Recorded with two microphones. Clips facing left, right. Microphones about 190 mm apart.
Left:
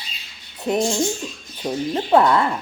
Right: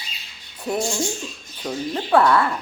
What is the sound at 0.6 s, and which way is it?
Speech, 20° left (ahead or behind).